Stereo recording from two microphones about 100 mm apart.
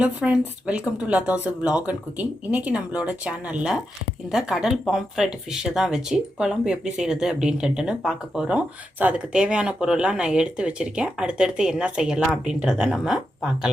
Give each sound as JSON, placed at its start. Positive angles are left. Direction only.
{"t": 0.0, "sound": "speech", "side_deg": -10}